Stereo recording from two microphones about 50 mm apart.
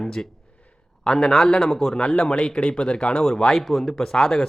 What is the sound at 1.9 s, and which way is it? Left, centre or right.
Speech, centre.